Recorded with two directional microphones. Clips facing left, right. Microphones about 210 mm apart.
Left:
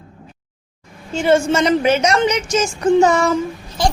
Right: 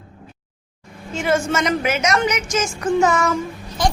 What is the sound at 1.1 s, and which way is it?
A woman's voice, 30° left (ahead or behind).